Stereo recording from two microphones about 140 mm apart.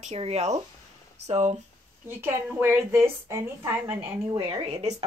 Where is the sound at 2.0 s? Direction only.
15° right (ahead or behind).